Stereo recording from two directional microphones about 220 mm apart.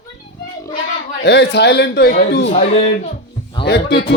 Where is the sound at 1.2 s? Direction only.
50° left (ahead or behind).